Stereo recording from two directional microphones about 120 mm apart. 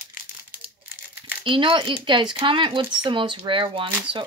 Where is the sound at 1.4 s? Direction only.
45° right (ahead or behind).